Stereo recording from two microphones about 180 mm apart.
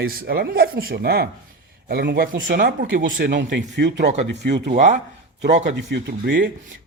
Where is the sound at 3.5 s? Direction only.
80° right.